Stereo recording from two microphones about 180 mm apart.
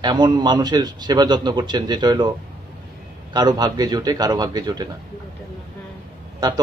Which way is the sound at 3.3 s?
20° right (ahead or behind).